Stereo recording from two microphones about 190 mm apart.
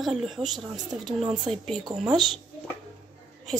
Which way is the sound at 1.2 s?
30° right (ahead or behind).